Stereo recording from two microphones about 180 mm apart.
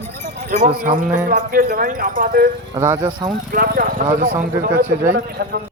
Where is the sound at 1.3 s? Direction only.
50° right (ahead or behind).